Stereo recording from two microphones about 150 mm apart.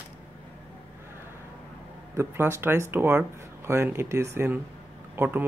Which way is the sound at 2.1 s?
15° right (ahead or behind).